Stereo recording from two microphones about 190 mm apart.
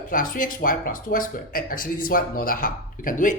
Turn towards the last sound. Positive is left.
turn(degrees=45)  # may be behind; listen again after turning